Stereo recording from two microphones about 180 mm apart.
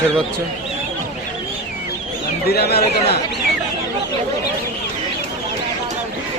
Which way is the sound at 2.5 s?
65° left (ahead or behind).